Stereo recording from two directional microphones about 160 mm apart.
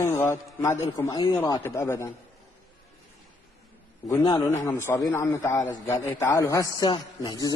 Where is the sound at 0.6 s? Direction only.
20° left (ahead or behind).